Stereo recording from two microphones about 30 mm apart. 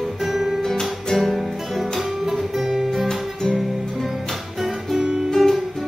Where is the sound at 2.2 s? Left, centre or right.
Centre.